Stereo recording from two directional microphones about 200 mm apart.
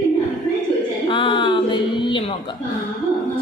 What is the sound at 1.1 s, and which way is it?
Music, 25° left (ahead or behind).